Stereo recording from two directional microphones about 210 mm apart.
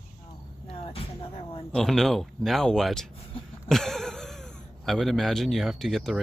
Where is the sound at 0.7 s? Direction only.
25° left (ahead or behind).